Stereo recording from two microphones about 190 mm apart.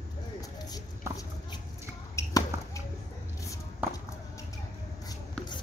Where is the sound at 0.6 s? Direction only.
20° left (ahead or behind).